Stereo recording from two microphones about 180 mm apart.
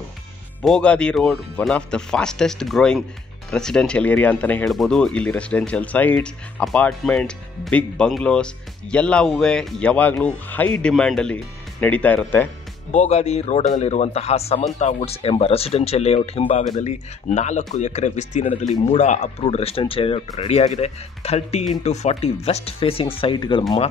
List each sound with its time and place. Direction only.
0.6 s speech: 5° left (ahead or behind)
12.9 s speech: 40° left (ahead or behind)